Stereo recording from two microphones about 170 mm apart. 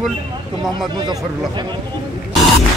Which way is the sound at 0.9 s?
25° right (ahead or behind).